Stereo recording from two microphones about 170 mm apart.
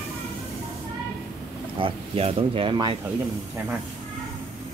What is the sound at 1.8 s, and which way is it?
Speech, 35° right (ahead or behind).